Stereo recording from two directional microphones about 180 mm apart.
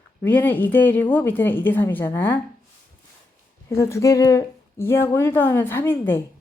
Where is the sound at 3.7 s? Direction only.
15° left (ahead or behind).